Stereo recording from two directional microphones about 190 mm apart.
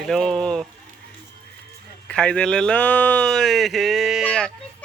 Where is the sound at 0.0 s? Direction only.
Centre (ahead or behind).